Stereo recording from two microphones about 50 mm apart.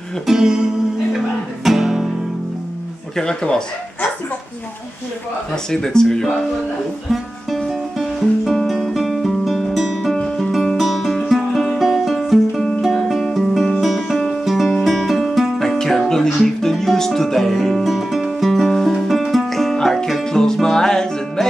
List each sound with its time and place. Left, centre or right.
0.3 s music: centre
3.2 s speech: centre
5.7 s speech: centre
7.1 s music: centre
10.1 s music: centre
10.5 s music: centre